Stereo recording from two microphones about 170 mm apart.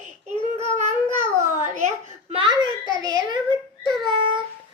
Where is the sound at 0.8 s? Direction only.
40° right (ahead or behind).